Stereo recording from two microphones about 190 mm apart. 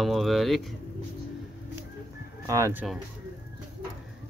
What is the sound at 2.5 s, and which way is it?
Speech, 15° right (ahead or behind).